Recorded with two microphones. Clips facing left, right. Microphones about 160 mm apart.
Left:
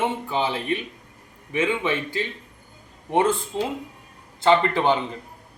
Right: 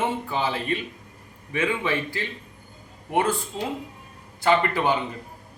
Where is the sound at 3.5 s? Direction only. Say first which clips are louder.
Left 3 dB; 20° left (ahead or behind).